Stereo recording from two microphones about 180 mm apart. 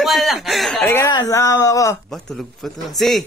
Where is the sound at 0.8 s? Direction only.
15° left (ahead or behind).